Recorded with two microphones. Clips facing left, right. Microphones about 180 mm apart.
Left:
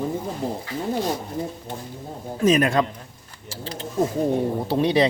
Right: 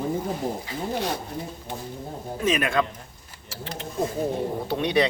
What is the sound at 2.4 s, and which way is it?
Speech, 35° left (ahead or behind).